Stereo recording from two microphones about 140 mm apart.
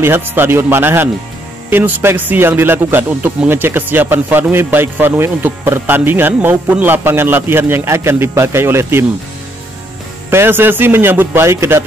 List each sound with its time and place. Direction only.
0.0 s speech: 15° right (ahead or behind)
10.3 s speech: 15° right (ahead or behind)